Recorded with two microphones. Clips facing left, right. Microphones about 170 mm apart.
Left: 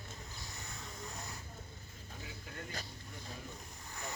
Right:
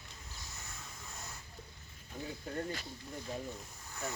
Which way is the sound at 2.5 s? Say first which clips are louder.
Right 11 dB; 40° right (ahead or behind).